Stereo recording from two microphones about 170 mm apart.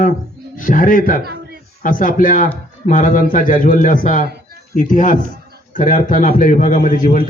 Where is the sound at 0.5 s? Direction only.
55° left (ahead or behind).